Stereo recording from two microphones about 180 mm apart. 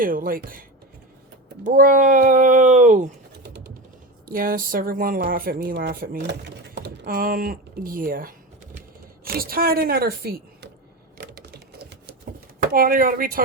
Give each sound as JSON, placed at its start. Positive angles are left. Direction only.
{"t": 0.0, "sound": "speech", "side_deg": -50}
{"t": 1.6, "sound": "speech", "side_deg": -50}
{"t": 3.4, "sound": "a sound", "side_deg": -65}
{"t": 4.3, "sound": "speech", "side_deg": -50}
{"t": 6.7, "sound": "speech", "side_deg": -70}
{"t": 11.2, "sound": "typewriter", "side_deg": -55}
{"t": 12.7, "sound": "speech", "side_deg": -50}